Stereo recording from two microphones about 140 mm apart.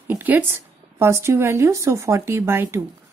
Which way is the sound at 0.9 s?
20° right (ahead or behind).